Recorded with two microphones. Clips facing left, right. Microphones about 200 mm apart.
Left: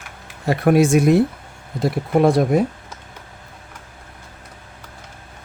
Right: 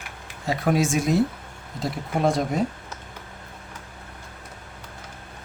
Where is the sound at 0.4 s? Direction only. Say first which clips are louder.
Left 7 dB; 60° left (ahead or behind).